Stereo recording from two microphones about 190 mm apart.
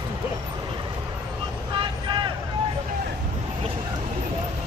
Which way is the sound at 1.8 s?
25° right (ahead or behind).